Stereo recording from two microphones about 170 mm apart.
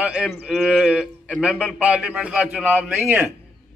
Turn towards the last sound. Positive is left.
turn(degrees=-10)  # may be behind; listen again after turning